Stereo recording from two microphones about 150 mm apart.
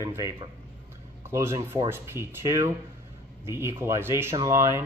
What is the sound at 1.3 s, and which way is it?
Speech, 20° right (ahead or behind).